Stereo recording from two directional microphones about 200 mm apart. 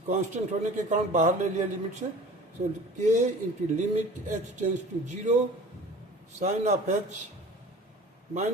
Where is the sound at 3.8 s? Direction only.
40° right (ahead or behind).